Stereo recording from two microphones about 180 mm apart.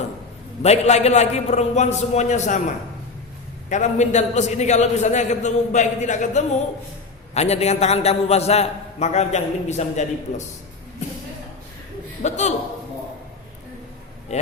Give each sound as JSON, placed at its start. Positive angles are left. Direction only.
{"t": 0.6, "sound": "a man's voice", "side_deg": 35}
{"t": 3.7, "sound": "a man's voice", "side_deg": 40}
{"t": 12.2, "sound": "a man's voice", "side_deg": 40}